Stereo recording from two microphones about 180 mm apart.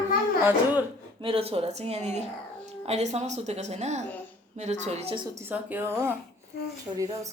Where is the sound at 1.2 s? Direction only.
30° right (ahead or behind).